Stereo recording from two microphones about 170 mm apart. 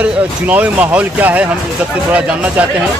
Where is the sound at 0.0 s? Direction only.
10° right (ahead or behind).